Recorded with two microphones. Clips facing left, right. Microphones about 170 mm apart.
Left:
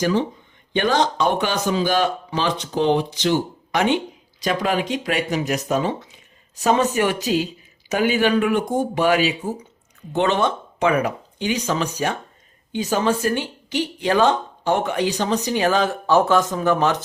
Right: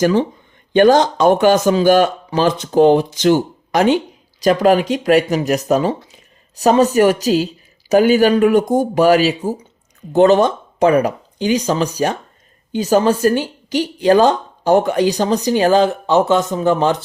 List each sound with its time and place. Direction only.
0.0 s a woman's voice: 50° right (ahead or behind); by 15.9 s 35° right (ahead or behind)
15.9 s speech: 20° right (ahead or behind)